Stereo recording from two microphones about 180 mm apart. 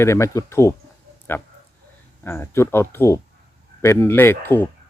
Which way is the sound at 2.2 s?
15° left (ahead or behind).